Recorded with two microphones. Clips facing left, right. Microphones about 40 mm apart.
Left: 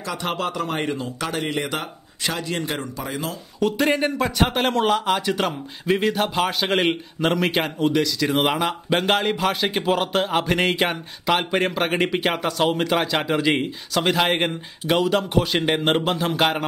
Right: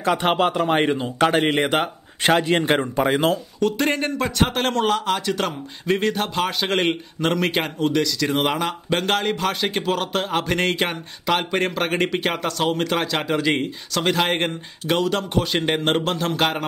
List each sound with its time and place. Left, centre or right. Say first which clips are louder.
0.0 s speech: right 7 dB; right
3.5 s speech: left 1 dB; centre